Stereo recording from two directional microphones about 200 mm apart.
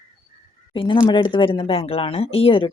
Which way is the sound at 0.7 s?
25° left (ahead or behind).